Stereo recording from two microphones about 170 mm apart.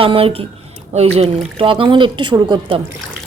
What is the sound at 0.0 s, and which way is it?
Speech, 35° right (ahead or behind).